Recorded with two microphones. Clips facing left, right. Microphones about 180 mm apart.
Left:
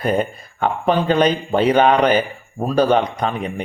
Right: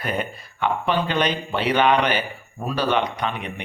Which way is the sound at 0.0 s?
40° left (ahead or behind).